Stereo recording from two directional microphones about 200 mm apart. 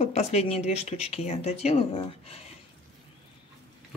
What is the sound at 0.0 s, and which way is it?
A woman's voice, 30° left (ahead or behind).